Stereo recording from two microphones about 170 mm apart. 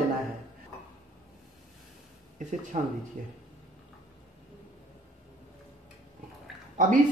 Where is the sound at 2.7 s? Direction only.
40° right (ahead or behind).